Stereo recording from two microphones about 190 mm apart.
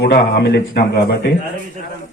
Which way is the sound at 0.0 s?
60° left (ahead or behind).